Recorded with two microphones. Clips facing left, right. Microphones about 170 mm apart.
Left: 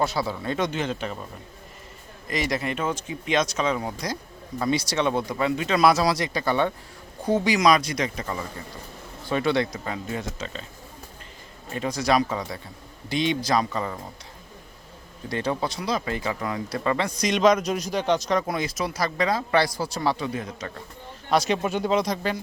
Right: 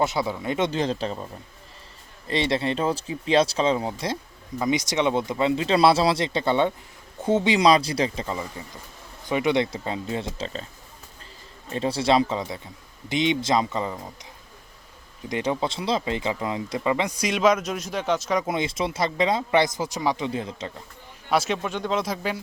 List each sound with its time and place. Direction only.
0.0 s a man's voice: 20° right (ahead or behind)
0.7 s speech: 35° right (ahead or behind)
2.2 s a man's voice: 30° right (ahead or behind)
11.7 s a man's voice: 30° right (ahead or behind)
15.3 s speech: 20° right (ahead or behind)
18.4 s a man's voice: 25° right (ahead or behind)
21.2 s speech: 5° right (ahead or behind)
21.6 s speech: 10° left (ahead or behind); by 22.4 s 5° right (ahead or behind)